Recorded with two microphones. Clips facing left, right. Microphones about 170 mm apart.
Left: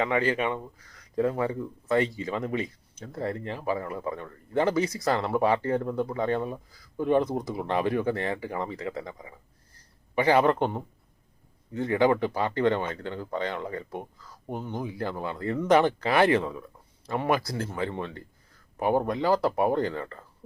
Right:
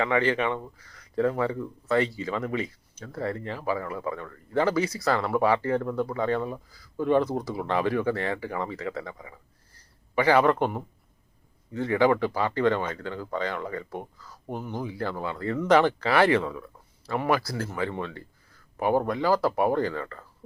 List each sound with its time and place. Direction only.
0.3 s speech: 20° left (ahead or behind)